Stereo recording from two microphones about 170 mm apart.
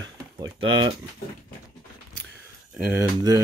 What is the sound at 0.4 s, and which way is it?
Speech, 25° right (ahead or behind).